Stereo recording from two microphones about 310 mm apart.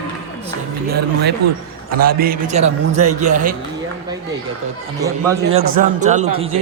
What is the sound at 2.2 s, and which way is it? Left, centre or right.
Speech, right.